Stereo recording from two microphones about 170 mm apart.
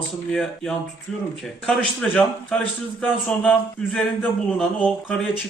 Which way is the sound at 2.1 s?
5° left (ahead or behind).